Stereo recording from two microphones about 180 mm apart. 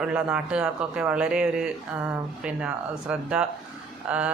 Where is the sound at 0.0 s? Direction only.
5° right (ahead or behind).